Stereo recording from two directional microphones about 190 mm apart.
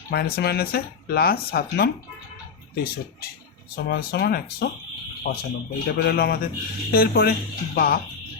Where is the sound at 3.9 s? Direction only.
60° left (ahead or behind).